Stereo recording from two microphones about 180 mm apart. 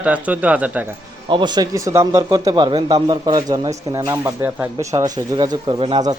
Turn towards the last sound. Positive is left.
turn(degrees=-25)  # may be behind; listen again after turning